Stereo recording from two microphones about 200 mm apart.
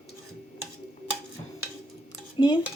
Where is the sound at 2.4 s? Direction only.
25° left (ahead or behind).